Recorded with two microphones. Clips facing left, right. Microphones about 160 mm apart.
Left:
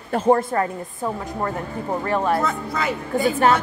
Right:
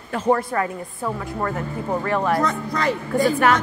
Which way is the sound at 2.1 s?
25° left (ahead or behind).